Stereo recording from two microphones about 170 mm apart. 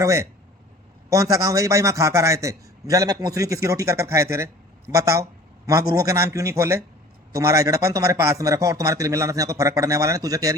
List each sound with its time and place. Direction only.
0.0 s a man's voice: 15° right (ahead or behind)